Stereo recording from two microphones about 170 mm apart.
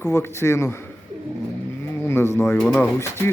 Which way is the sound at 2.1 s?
15° left (ahead or behind).